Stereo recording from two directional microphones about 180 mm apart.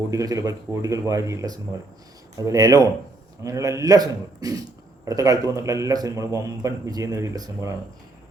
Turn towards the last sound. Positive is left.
turn(degrees=-20)  # may be behind; listen again after turning